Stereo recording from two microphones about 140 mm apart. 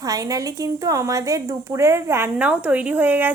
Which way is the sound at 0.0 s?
25° right (ahead or behind).